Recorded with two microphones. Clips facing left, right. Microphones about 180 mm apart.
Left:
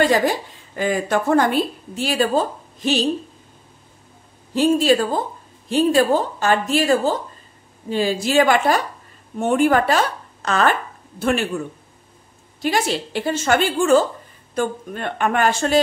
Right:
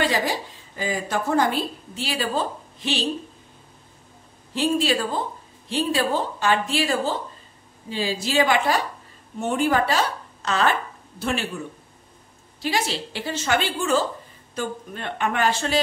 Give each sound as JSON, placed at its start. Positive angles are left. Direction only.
{"t": 0.0, "sound": "a woman's voice", "side_deg": 50}
{"t": 4.6, "sound": "a woman's voice", "side_deg": 45}
{"t": 12.6, "sound": "a woman's voice", "side_deg": 50}